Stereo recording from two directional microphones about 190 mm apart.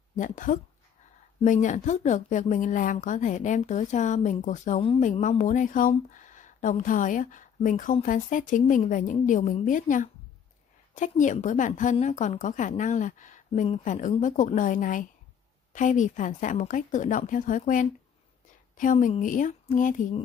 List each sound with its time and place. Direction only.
0.1 s a woman's voice: 40° left (ahead or behind)